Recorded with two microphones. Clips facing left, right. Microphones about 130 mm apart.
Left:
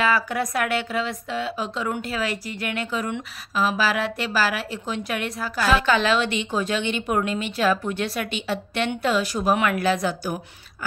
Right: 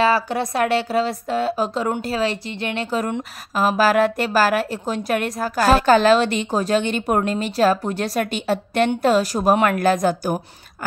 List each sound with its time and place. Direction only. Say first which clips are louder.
0.0 s a woman's voice: right 4 dB; 30° right (ahead or behind)
3.0 s a woman's voice: right 4 dB; 45° right (ahead or behind)